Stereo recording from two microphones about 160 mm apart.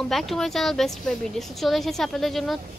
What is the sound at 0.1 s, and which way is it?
A woman's voice, centre (ahead or behind).